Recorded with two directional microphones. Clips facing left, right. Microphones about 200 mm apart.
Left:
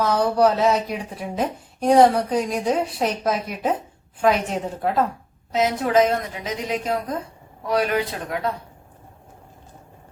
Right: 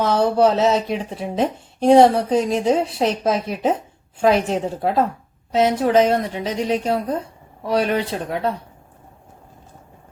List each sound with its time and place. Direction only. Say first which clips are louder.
0.0 s a woman's voice: right 2 dB; 25° right (ahead or behind)